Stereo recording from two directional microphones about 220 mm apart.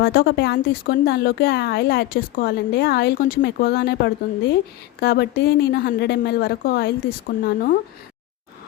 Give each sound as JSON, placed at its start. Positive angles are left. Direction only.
{"t": 0.0, "sound": "speech", "side_deg": 45}